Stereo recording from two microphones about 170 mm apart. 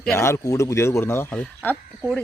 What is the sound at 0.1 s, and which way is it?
Speech, 15° left (ahead or behind).